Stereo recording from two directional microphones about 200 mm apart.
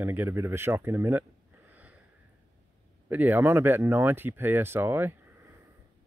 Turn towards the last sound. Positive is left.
turn(degrees=-10)  # may be behind; listen again after turning